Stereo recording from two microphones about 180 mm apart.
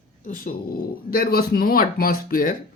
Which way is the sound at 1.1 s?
55° left (ahead or behind).